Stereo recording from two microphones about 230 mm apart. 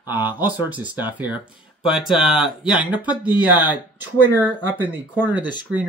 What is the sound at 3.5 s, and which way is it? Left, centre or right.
Speech, centre.